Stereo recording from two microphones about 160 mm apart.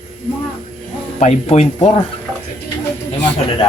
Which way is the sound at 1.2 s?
45° left (ahead or behind).